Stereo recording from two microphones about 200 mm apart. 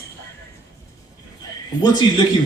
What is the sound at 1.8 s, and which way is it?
Speech, 20° left (ahead or behind).